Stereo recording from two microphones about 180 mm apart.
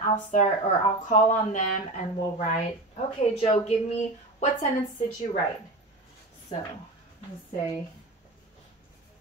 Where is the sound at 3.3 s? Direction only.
35° left (ahead or behind).